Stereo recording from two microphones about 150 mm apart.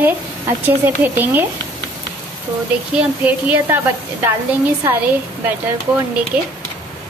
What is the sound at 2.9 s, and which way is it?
A woman's voice, 10° right (ahead or behind).